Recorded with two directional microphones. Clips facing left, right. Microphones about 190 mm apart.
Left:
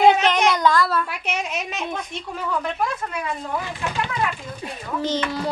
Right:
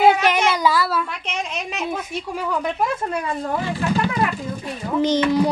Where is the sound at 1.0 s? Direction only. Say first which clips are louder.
Left 1 dB; 10° left (ahead or behind).